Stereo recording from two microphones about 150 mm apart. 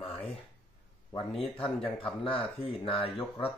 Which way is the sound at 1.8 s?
35° left (ahead or behind).